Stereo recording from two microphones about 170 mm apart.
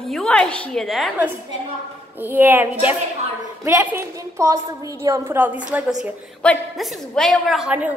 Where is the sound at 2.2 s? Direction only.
10° right (ahead or behind).